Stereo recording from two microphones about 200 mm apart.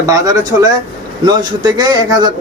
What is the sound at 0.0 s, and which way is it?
Speech, 15° right (ahead or behind).